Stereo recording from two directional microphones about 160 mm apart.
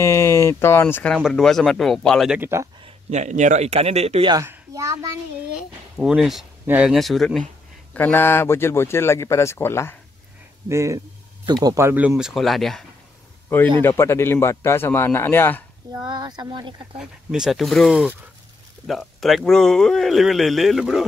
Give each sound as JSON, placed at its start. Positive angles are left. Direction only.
{"t": 0.0, "sound": "speech", "side_deg": 15}
{"t": 1.1, "sound": "speech", "side_deg": 0}
{"t": 2.8, "sound": "a man's voice", "side_deg": -45}
{"t": 4.3, "sound": "speech", "side_deg": -20}
{"t": 5.6, "sound": "speech", "side_deg": -5}
{"t": 7.9, "sound": "a man's voice", "side_deg": 10}
{"t": 10.7, "sound": "speech", "side_deg": -20}
{"t": 13.5, "sound": "a man's voice", "side_deg": 15}
{"t": 15.9, "sound": "speech", "side_deg": -25}
{"t": 17.0, "sound": "speech", "side_deg": -5}